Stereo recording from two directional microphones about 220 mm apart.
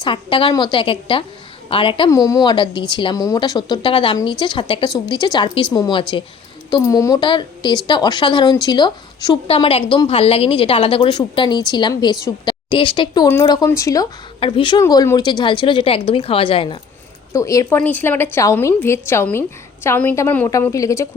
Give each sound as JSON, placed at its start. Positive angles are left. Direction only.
{"t": 0.0, "sound": "speech", "side_deg": 25}
{"t": 17.3, "sound": "a woman's voice", "side_deg": 15}